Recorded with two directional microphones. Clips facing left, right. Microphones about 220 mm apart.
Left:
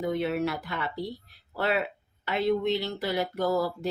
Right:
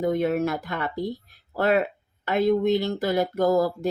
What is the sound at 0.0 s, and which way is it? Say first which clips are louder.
A woman's voice: right 5 dB; 50° right (ahead or behind).